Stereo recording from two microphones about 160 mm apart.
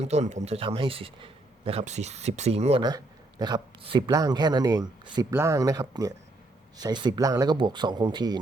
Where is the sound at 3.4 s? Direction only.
30° right (ahead or behind).